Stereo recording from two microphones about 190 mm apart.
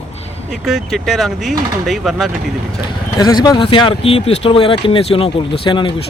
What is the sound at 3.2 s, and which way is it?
Speech, 20° left (ahead or behind).